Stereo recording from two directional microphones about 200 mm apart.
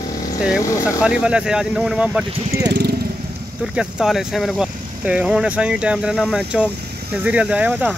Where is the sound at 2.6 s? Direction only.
55° right (ahead or behind).